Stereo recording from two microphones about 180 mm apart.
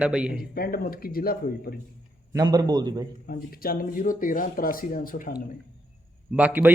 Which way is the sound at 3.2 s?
55° left (ahead or behind).